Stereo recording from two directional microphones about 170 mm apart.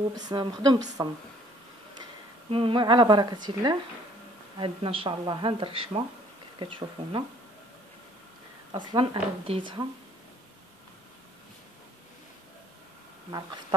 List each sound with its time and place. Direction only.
0.3 s a woman's voice: 25° right (ahead or behind)
2.5 s a woman's voice: 30° right (ahead or behind)
8.7 s a woman's voice: 30° right (ahead or behind)